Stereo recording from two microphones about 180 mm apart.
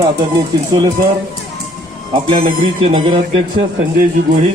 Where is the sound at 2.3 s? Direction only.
30° right (ahead or behind).